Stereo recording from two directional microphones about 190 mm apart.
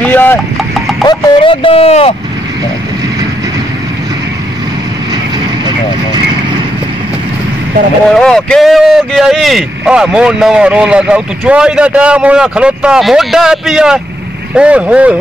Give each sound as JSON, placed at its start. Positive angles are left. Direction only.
{"t": 0.0, "sound": "vehicle", "side_deg": 10}
{"t": 1.0, "sound": "speech", "side_deg": 25}
{"t": 8.1, "sound": "speech", "side_deg": 5}